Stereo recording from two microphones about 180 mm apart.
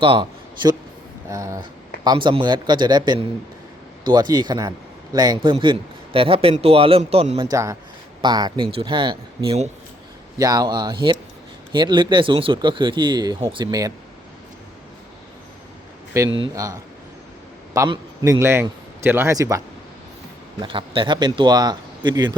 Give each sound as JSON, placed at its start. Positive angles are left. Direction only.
{"t": 0.0, "sound": "a man's voice", "side_deg": -30}
{"t": 7.5, "sound": "speech", "side_deg": -15}
{"t": 16.1, "sound": "speech", "side_deg": -15}
{"t": 17.7, "sound": "a man's voice", "side_deg": -20}
{"t": 20.6, "sound": "speech", "side_deg": -30}